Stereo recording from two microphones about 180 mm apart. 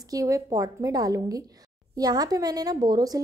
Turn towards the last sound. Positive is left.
turn(degrees=-20)  # may be behind; listen again after turning